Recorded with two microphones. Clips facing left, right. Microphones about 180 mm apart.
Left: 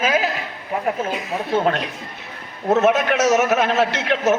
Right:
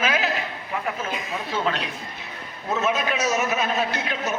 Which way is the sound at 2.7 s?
70° left (ahead or behind).